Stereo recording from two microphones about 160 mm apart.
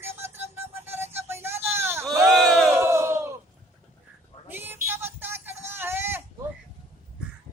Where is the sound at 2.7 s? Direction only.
15° right (ahead or behind).